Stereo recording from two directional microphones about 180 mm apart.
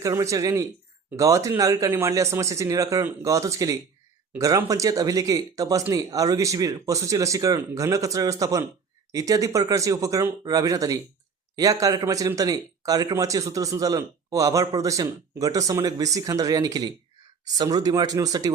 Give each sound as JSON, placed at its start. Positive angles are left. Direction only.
{"t": 0.0, "sound": "a man's voice", "side_deg": -15}